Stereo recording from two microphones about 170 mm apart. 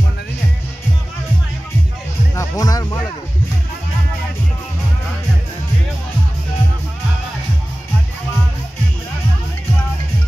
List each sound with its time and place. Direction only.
2.3 s music: 20° left (ahead or behind)